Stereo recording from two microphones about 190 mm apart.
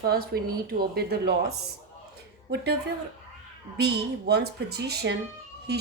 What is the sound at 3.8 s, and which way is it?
Speech, 60° right (ahead or behind).